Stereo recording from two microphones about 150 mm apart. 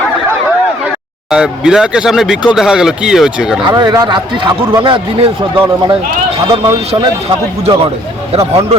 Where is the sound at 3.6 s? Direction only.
25° right (ahead or behind).